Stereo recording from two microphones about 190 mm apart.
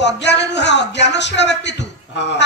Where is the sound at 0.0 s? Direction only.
65° left (ahead or behind).